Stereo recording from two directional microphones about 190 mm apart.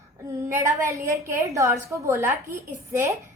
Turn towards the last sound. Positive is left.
turn(degrees=-15)  # may be behind; listen again after turning